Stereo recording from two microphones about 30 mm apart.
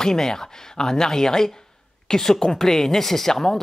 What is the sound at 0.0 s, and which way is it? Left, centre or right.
A woman's voice, centre.